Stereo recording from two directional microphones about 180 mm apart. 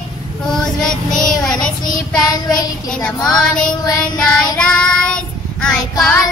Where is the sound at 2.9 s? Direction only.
5° left (ahead or behind).